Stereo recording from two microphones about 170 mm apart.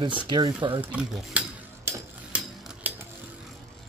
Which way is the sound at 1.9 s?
10° right (ahead or behind).